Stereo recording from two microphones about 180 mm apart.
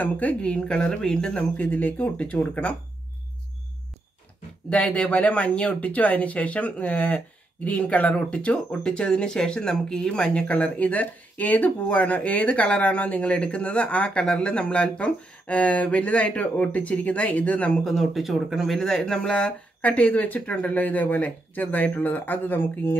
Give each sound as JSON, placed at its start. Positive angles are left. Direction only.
{"t": 0.0, "sound": "speech", "side_deg": 10}
{"t": 4.6, "sound": "speech", "side_deg": 5}